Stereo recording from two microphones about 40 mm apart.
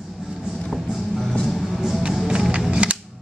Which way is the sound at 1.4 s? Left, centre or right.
Centre.